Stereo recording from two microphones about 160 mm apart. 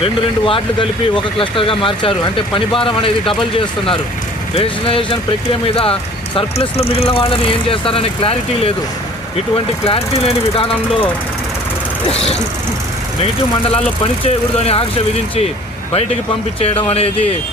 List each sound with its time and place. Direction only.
0.0 s speech: 35° left (ahead or behind)
4.5 s speech: 35° left (ahead or behind)
9.8 s speech: 35° left (ahead or behind)
12.1 s speech: 40° left (ahead or behind)
14.3 s speech: 40° left (ahead or behind)
16.6 s speech: 35° left (ahead or behind)